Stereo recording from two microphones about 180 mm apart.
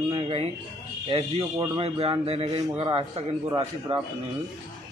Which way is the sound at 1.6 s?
30° right (ahead or behind).